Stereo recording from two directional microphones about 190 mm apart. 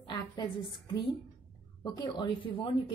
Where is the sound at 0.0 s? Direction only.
25° left (ahead or behind).